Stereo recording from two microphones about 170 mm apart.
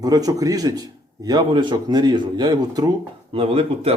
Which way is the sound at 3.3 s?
35° right (ahead or behind).